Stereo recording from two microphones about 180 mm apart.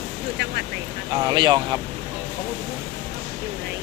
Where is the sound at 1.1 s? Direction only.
25° right (ahead or behind).